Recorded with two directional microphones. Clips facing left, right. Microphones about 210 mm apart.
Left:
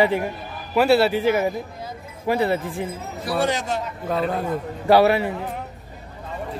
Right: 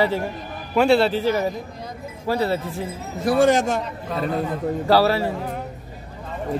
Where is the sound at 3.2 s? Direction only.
50° right (ahead or behind).